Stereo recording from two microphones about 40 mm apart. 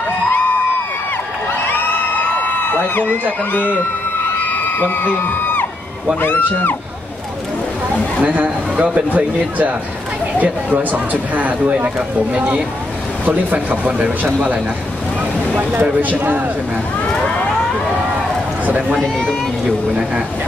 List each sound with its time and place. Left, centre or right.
1.5 s a sound: left
4.7 s a man's voice: left
8.2 s speech: right
11.7 s speech: right
15.7 s speech: right
17.1 s speech: centre
17.9 s run: right
18.7 s speech: right
18.9 s speech: centre